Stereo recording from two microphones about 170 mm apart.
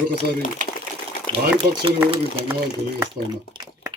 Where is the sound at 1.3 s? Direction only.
30° right (ahead or behind).